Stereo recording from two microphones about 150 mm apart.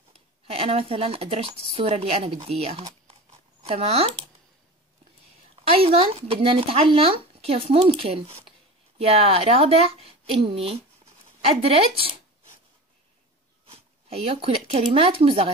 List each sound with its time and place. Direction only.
0.5 s speech: 40° right (ahead or behind)
5.8 s speech: 40° right (ahead or behind)
13.7 s speech: 40° right (ahead or behind)